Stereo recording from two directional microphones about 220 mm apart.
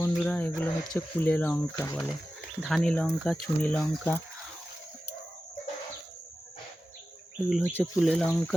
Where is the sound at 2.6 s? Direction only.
Centre (ahead or behind).